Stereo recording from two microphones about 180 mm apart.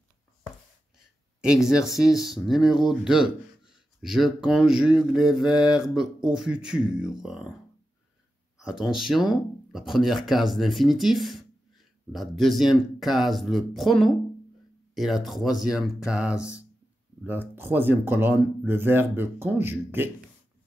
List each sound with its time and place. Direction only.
1.4 s speech: 5° right (ahead or behind)
8.6 s speech: centre (ahead or behind)
16.3 s speech: 15° left (ahead or behind)
17.2 s speech: 10° right (ahead or behind)